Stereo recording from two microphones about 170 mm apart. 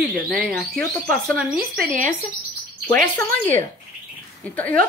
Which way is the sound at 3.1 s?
10° left (ahead or behind).